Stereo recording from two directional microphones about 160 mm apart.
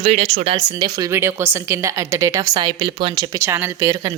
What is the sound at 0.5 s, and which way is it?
A woman's voice, 25° right (ahead or behind).